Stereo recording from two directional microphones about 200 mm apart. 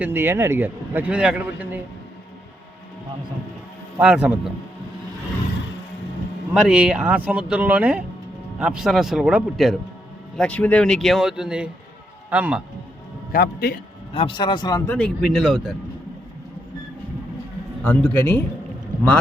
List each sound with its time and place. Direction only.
0.0 s a man's voice: 10° right (ahead or behind)
3.9 s speech: 5° right (ahead or behind)
6.5 s a man's voice: 5° right (ahead or behind)
13.3 s a man's voice: 50° left (ahead or behind)
14.1 s speech: 25° left (ahead or behind)
14.8 s speech: 5° left (ahead or behind)
17.8 s a man's voice: 10° left (ahead or behind)